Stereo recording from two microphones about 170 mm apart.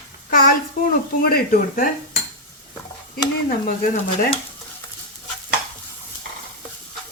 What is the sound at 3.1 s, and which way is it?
Speech, 60° left (ahead or behind).